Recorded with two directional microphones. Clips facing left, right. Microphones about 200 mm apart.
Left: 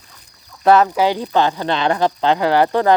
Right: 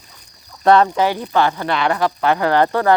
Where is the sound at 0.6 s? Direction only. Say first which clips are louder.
Even; 5° left (ahead or behind).